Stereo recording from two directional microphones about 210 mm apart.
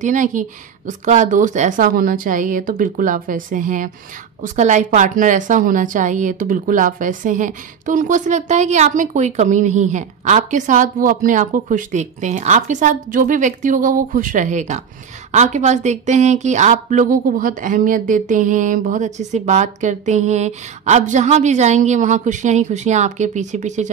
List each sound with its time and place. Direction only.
0.0 s a woman's voice: 35° right (ahead or behind)